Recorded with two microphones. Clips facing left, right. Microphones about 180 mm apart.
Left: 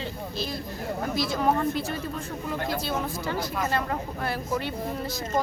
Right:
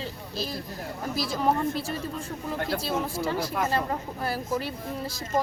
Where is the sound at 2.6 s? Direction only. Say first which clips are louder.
Right 1 dB; 30° right (ahead or behind).